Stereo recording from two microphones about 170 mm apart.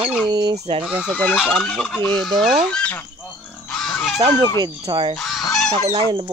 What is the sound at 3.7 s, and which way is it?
Pig, 5° left (ahead or behind).